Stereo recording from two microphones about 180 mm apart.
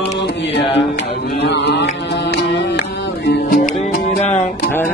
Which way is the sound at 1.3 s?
70° left (ahead or behind).